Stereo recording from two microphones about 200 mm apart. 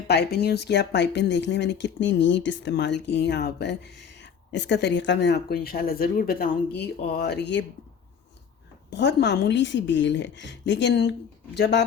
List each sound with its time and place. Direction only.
0.1 s speech: 55° left (ahead or behind)
8.9 s speech: 60° left (ahead or behind)